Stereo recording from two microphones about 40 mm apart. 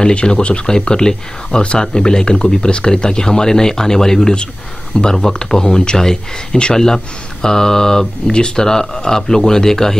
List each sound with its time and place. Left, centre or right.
0.0 s speech: left